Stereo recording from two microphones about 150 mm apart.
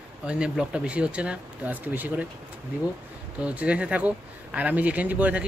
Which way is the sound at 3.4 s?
10° right (ahead or behind).